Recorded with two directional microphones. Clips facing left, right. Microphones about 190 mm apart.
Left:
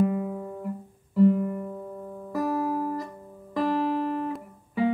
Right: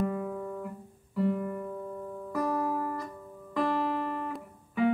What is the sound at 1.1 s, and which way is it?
Guitar, 5° left (ahead or behind).